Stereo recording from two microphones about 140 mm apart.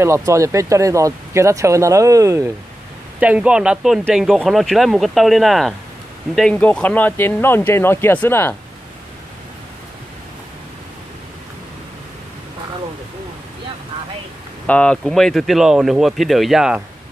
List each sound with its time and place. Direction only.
0.0 s speech: 20° right (ahead or behind)
3.2 s speech: 10° right (ahead or behind); by 8.5 s 15° left (ahead or behind)
14.7 s speech: 10° left (ahead or behind)